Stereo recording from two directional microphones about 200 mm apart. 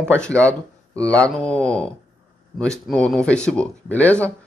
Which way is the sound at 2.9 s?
5° left (ahead or behind).